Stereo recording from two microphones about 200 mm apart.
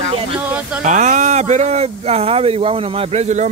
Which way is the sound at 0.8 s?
35° right (ahead or behind).